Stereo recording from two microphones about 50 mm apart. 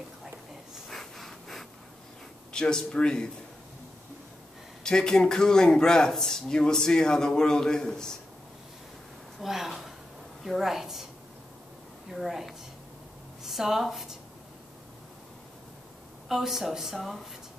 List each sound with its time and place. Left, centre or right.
0.8 s a sound: centre
2.5 s speech: centre
4.8 s speech: centre
9.4 s speech: centre
12.1 s speech: centre
16.3 s speech: centre